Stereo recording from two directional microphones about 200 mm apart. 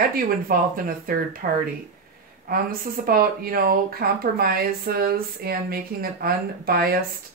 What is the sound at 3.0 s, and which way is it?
Speech, 50° right (ahead or behind).